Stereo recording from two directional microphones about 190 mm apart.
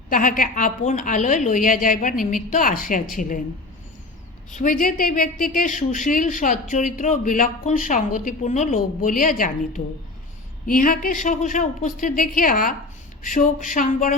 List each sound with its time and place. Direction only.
0.1 s speech: 45° left (ahead or behind)
4.5 s speech: 45° left (ahead or behind)